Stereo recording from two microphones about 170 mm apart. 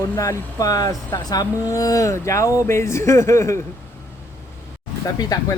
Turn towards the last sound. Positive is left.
turn(degrees=20)  # may be behind; listen again after turning